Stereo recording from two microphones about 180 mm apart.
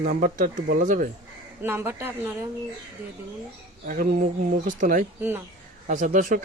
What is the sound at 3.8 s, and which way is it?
Speech, 50° right (ahead or behind).